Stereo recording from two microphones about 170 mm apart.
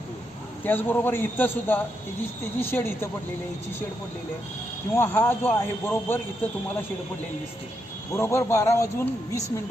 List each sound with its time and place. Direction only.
0.6 s a man's voice: 10° left (ahead or behind)
4.9 s a man's voice: 10° left (ahead or behind)
8.1 s a man's voice: 15° left (ahead or behind)